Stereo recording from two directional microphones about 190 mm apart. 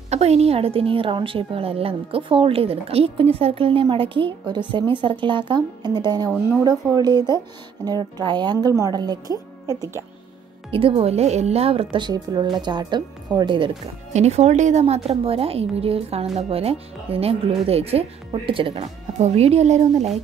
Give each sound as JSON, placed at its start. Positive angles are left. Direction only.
{"t": 0.1, "sound": "a woman's voice", "side_deg": -35}
{"t": 10.7, "sound": "a woman's voice", "side_deg": -30}
{"t": 14.1, "sound": "speech", "side_deg": -35}